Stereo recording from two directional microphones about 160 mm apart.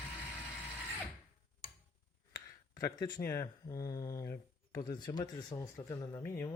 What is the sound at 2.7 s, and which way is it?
Speech, 25° left (ahead or behind).